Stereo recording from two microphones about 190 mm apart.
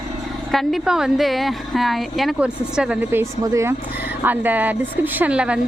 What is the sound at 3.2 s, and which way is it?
A woman's voice, 15° right (ahead or behind).